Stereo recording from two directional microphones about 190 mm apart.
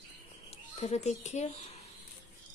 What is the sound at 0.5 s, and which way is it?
Speech, 35° left (ahead or behind).